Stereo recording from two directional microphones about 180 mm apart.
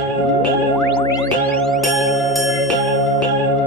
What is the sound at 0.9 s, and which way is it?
Music, 20° left (ahead or behind).